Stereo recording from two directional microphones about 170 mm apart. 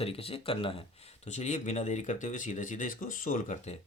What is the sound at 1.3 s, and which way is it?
Speech, 40° left (ahead or behind).